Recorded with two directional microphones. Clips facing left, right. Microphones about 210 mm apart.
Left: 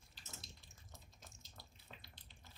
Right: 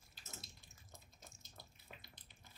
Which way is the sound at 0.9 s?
Centre (ahead or behind).